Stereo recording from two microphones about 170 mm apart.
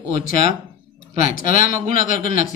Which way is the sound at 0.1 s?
55° left (ahead or behind).